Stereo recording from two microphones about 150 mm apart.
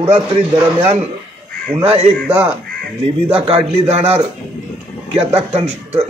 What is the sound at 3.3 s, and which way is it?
Speech, 40° right (ahead or behind).